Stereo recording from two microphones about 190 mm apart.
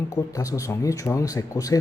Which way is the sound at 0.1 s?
15° left (ahead or behind).